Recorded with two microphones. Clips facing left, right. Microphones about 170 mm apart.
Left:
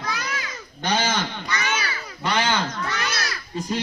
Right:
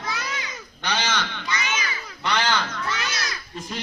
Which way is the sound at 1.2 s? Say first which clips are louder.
Left 2 dB; 40° left (ahead or behind).